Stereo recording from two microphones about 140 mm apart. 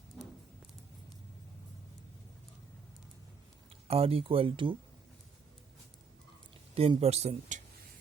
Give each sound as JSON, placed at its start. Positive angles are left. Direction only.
{"t": 3.8, "sound": "speech", "side_deg": -45}
{"t": 6.7, "sound": "speech", "side_deg": -45}